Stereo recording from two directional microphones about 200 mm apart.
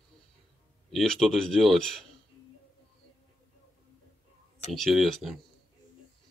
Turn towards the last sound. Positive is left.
turn(degrees=0)  # may be behind; listen again after turning